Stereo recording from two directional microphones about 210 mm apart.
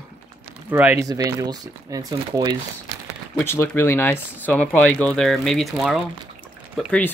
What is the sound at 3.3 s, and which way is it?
Speech, 10° left (ahead or behind).